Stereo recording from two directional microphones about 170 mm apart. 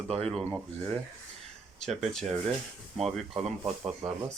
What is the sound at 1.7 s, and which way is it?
Speech, centre (ahead or behind).